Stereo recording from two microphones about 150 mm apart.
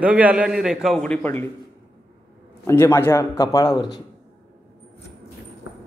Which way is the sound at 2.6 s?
15° left (ahead or behind).